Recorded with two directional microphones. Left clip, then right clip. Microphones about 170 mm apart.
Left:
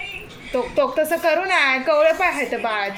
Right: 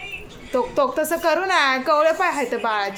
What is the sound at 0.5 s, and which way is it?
Speech, 15° right (ahead or behind).